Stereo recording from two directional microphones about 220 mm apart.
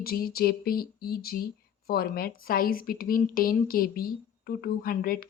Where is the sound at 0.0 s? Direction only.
45° left (ahead or behind).